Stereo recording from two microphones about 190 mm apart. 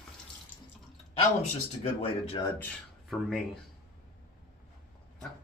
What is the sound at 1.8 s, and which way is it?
Speech, 30° left (ahead or behind).